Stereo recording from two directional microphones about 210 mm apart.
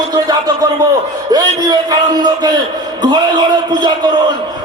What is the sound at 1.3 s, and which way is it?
A man's voice, 20° right (ahead or behind).